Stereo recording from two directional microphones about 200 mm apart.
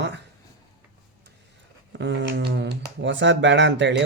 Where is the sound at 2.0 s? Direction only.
65° right (ahead or behind).